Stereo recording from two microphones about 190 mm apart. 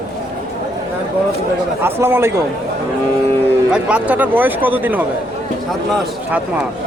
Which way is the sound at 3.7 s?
5° right (ahead or behind).